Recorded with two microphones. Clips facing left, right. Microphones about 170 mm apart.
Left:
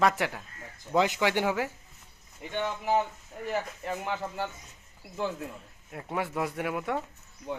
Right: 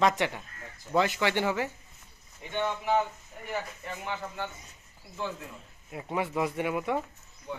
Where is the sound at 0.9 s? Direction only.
15° left (ahead or behind).